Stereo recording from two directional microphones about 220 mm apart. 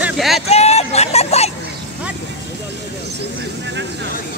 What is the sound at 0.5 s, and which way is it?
Vehicle, 30° left (ahead or behind).